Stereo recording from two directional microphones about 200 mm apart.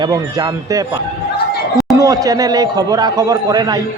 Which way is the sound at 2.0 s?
20° right (ahead or behind).